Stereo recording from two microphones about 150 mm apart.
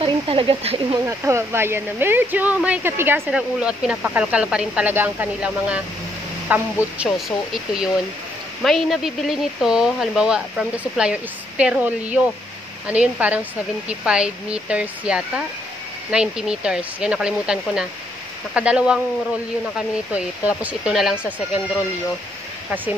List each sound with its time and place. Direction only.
0.0 s a sound: 35° right (ahead or behind)
1.0 s speech: 20° right (ahead or behind)
20.1 s speech: 10° right (ahead or behind)